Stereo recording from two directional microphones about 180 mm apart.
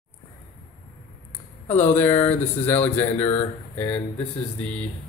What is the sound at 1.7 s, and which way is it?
Speech, 10° left (ahead or behind).